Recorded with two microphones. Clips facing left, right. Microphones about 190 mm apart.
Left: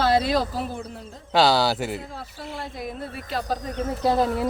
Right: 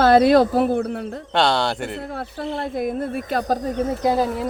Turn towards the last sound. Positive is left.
turn(degrees=-5)  # may be behind; listen again after turning